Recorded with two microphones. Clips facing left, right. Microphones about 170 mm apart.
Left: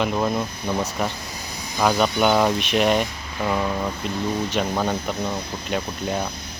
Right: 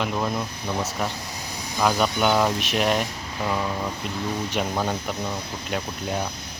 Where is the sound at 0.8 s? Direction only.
Centre (ahead or behind).